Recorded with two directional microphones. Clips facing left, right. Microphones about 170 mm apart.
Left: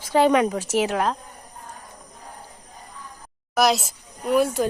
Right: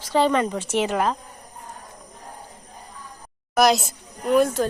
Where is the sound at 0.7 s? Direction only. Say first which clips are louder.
Even; centre (ahead or behind).